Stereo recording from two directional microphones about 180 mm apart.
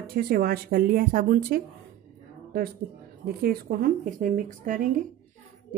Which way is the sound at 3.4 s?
55° right (ahead or behind).